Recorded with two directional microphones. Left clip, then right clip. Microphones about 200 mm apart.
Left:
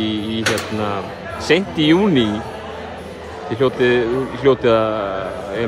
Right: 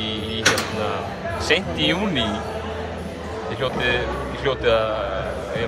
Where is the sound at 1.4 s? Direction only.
35° left (ahead or behind).